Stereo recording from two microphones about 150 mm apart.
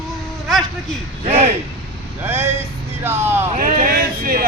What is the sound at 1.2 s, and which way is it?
Speech, 45° right (ahead or behind).